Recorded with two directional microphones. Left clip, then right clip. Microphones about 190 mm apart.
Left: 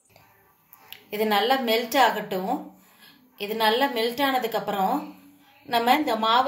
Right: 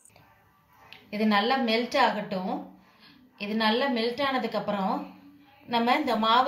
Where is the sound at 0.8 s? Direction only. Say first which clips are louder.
Left 4 dB; 55° left (ahead or behind).